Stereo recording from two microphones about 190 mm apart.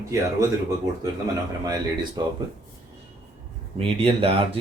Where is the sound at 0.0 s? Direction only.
15° right (ahead or behind).